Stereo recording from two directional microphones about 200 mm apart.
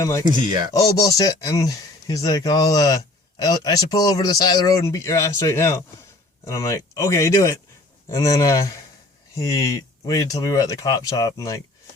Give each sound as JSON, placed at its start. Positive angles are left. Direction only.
{"t": 0.0, "sound": "speech", "side_deg": 15}